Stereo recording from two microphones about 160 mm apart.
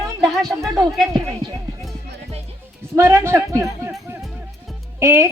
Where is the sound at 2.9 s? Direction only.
15° right (ahead or behind).